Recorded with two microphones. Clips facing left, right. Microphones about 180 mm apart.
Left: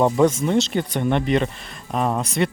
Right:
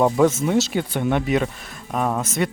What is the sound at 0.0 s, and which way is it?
Speech, 5° right (ahead or behind).